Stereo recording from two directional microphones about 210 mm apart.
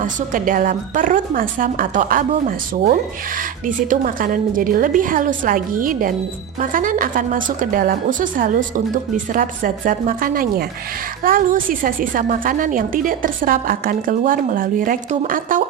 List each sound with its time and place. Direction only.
0.0 s a woman's voice: 40° right (ahead or behind)
3.8 s a woman's voice: 40° right (ahead or behind)